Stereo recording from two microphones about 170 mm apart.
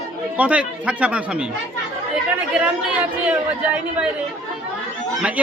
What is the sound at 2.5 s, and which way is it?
Speech, 5° right (ahead or behind).